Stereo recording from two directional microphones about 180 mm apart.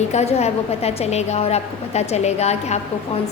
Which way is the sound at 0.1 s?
35° left (ahead or behind).